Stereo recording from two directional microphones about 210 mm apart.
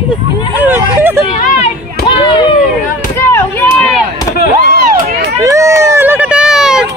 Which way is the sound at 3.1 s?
10° left (ahead or behind).